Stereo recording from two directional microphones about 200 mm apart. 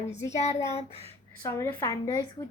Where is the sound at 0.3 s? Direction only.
35° left (ahead or behind).